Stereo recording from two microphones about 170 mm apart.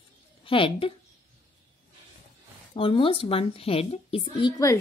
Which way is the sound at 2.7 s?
30° left (ahead or behind).